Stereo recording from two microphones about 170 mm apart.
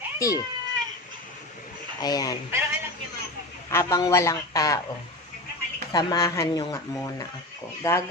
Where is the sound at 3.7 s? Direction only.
20° left (ahead or behind).